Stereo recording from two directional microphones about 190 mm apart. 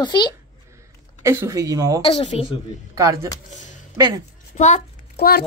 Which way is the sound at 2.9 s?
15° right (ahead or behind).